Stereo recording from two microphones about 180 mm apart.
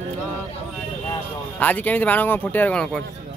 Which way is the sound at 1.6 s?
10° left (ahead or behind).